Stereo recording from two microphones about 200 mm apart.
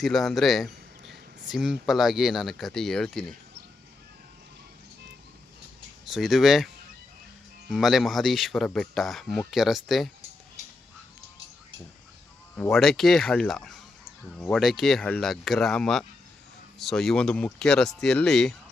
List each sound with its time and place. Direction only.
0.0 s speech: centre (ahead or behind)
6.1 s speech: centre (ahead or behind)
7.7 s speech: centre (ahead or behind)
12.7 s speech: centre (ahead or behind)